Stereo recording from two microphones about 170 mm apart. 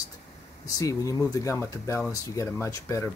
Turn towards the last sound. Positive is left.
turn(degrees=15)  # may be behind; listen again after turning